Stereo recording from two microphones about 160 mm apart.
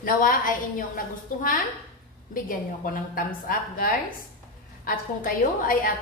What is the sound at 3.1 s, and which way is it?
A woman's voice, 65° left (ahead or behind).